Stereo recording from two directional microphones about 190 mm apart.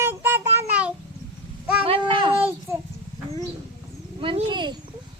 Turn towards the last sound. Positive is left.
turn(degrees=-25)  # may be behind; listen again after turning